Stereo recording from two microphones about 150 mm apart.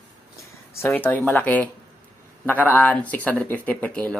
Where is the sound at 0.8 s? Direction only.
10° left (ahead or behind).